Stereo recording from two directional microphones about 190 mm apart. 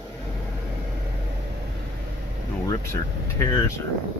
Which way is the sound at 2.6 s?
15° left (ahead or behind).